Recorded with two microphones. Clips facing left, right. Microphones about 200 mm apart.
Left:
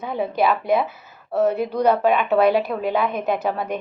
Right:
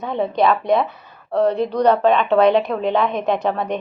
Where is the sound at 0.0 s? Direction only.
5° left (ahead or behind).